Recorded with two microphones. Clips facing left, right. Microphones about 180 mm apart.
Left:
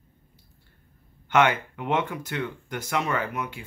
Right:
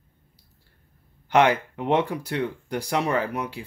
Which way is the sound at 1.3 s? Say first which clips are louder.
Right 2 dB; 35° right (ahead or behind).